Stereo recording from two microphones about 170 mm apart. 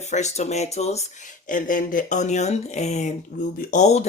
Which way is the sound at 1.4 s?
50° left (ahead or behind).